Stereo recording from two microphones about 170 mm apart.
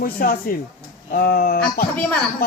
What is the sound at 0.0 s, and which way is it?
A man's voice, 60° left (ahead or behind).